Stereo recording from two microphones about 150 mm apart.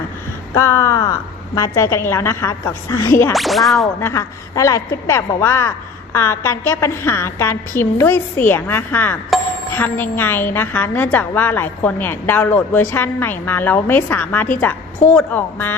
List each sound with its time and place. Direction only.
0.5 s a woman's voice: 20° left (ahead or behind)
3.3 s whip: centre (ahead or behind)
4.0 s a woman's voice: 20° left (ahead or behind)